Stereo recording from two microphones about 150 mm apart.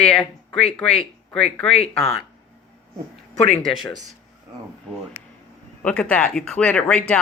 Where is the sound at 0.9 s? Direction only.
45° left (ahead or behind).